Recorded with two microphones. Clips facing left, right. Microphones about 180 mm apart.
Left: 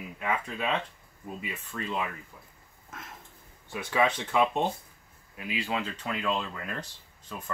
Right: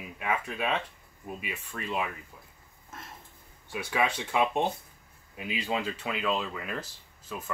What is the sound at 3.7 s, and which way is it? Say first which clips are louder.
Speech: left 2 dB; 10° right (ahead or behind).